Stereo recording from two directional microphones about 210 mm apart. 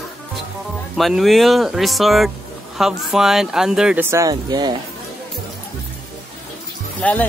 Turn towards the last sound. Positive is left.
turn(degrees=5)  # may be behind; listen again after turning